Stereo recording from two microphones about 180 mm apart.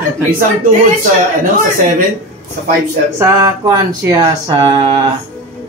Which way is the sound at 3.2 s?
20° right (ahead or behind).